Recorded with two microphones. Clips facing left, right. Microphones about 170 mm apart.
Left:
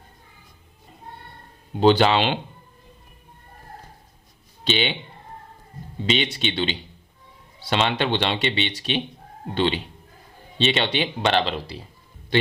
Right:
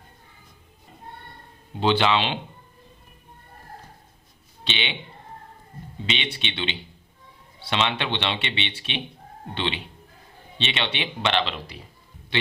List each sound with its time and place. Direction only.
1.8 s speech: 40° left (ahead or behind)
4.6 s speech: 40° left (ahead or behind)
6.1 s speech: 40° left (ahead or behind)